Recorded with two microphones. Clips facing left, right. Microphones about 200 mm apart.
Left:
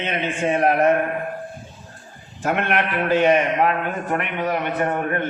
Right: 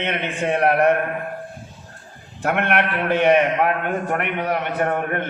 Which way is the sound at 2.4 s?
60° right (ahead or behind).